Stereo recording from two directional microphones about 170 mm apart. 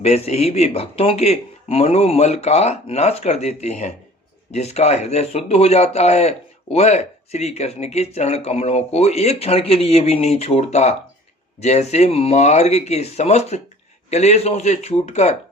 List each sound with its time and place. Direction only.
0.0 s speech: 40° left (ahead or behind)